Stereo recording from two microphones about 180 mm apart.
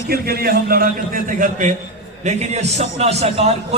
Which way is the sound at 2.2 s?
40° right (ahead or behind).